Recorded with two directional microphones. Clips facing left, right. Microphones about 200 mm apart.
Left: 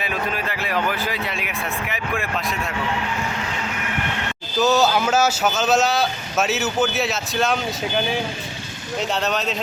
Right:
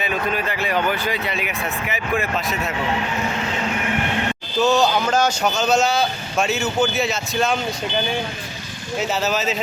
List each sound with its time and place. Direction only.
0.0 s speech: centre (ahead or behind)
4.6 s speech: 5° left (ahead or behind)